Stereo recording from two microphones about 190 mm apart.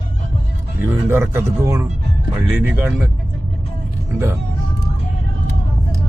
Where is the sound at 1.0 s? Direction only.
10° right (ahead or behind).